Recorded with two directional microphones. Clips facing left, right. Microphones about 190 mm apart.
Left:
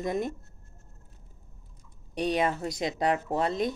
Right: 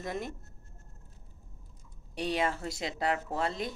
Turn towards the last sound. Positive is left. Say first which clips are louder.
# left 5 dB
turn(degrees=20)  # may be behind; listen again after turning